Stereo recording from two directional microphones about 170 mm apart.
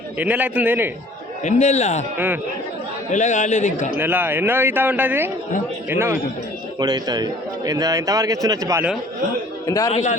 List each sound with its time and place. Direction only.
0.2 s speech: 10° right (ahead or behind)
1.5 s a man's voice: 45° left (ahead or behind)
2.1 s speech: 10° right (ahead or behind)
3.1 s a man's voice: 45° left (ahead or behind)
3.9 s a man's voice: 10° right (ahead or behind)
9.6 s a man's voice: 20° left (ahead or behind)
9.9 s a man's voice: 45° left (ahead or behind)